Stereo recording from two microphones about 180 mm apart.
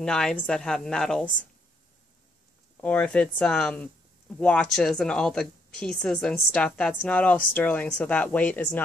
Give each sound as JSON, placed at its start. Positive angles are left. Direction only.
{"t": 0.0, "sound": "a woman's voice", "side_deg": 5}
{"t": 2.8, "sound": "speech", "side_deg": 5}